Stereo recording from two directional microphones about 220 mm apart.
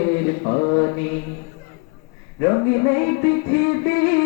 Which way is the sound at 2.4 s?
20° left (ahead or behind).